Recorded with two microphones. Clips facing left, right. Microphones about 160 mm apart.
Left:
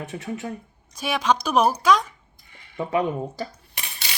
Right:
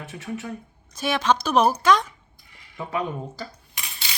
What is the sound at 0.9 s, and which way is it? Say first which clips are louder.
A woman's voice: even; 10° left (ahead or behind).